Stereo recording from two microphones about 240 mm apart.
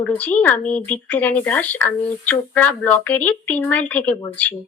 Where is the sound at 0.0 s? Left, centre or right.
Centre.